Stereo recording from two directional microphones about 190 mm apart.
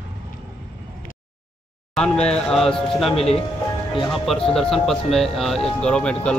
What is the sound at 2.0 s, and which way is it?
Speech, 5° left (ahead or behind).